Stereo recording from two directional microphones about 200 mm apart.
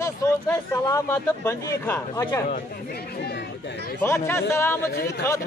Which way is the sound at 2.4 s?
45° left (ahead or behind).